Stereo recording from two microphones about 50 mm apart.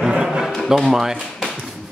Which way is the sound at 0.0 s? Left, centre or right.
Centre.